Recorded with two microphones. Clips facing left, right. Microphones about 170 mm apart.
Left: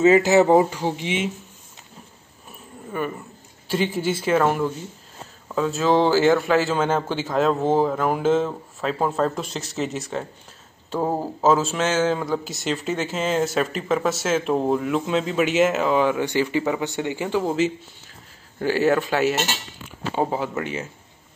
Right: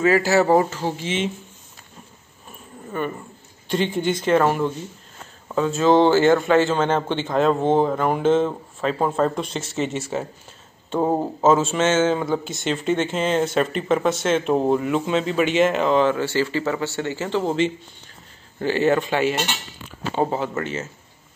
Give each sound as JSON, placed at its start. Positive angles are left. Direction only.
{"t": 0.0, "sound": "speech", "side_deg": 20}
{"t": 2.9, "sound": "speech", "side_deg": 10}